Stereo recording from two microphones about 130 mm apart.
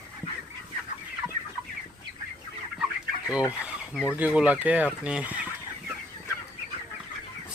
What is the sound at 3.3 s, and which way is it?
Speech, 10° right (ahead or behind).